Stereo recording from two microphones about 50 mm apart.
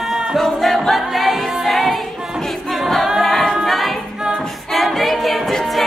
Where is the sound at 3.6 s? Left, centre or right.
Centre.